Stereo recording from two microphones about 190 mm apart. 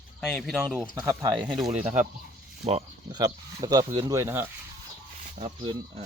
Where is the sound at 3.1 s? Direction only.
20° right (ahead or behind).